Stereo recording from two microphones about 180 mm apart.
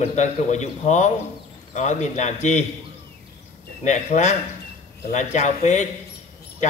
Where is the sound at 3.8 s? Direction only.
40° left (ahead or behind).